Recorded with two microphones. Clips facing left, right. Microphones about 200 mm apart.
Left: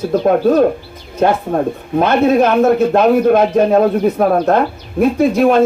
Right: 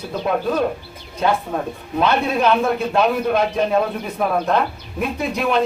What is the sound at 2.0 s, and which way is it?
A man's voice, 45° left (ahead or behind).